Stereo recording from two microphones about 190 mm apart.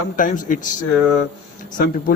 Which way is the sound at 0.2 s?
45° left (ahead or behind).